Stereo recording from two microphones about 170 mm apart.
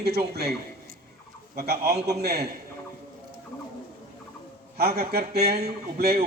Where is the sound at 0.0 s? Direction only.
70° right (ahead or behind).